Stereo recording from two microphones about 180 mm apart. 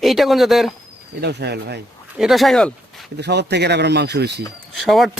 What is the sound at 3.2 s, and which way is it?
Speech, 70° right (ahead or behind).